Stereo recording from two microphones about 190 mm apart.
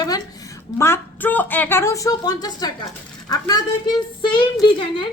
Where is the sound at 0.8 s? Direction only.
10° left (ahead or behind).